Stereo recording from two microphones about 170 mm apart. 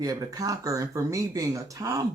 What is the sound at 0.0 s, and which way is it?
Speech, 20° right (ahead or behind).